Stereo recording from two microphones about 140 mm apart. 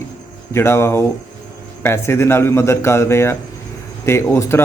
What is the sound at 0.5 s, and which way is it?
Speech, 20° left (ahead or behind).